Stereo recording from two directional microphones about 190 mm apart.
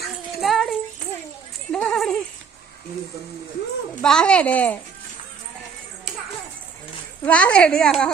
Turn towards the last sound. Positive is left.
turn(degrees=5)  # may be behind; listen again after turning